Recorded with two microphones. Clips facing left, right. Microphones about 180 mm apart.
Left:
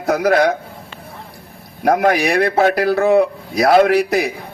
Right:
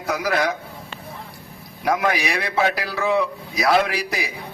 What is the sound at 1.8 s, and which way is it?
A man's voice, 50° left (ahead or behind).